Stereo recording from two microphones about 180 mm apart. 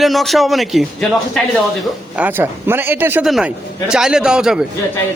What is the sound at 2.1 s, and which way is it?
A man's voice, 10° right (ahead or behind).